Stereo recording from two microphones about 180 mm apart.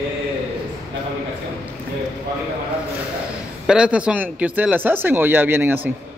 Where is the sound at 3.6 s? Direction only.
5° right (ahead or behind).